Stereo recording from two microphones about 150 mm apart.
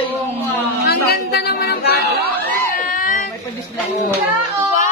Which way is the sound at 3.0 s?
60° left (ahead or behind).